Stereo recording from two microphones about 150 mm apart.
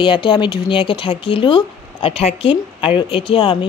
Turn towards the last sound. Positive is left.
turn(degrees=35)  # may be behind; listen again after turning